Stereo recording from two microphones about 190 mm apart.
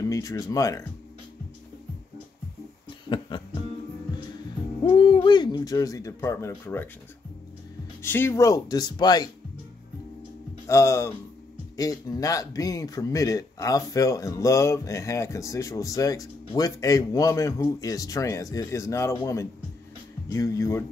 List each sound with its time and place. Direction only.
0.0 s speech: 15° left (ahead or behind)
3.1 s music: 25° left (ahead or behind)
4.8 s speech: 25° left (ahead or behind)
8.0 s speech: 10° left (ahead or behind)
10.7 s speech: 15° left (ahead or behind)